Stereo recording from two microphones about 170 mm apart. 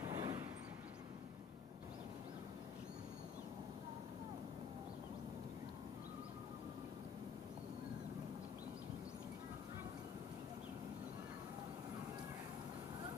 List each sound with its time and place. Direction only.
0.0 s vehicle: 25° right (ahead or behind)